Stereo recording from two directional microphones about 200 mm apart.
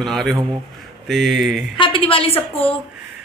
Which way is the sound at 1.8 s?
25° left (ahead or behind).